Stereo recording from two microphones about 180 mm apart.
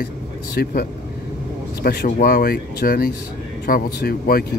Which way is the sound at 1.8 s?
60° left (ahead or behind).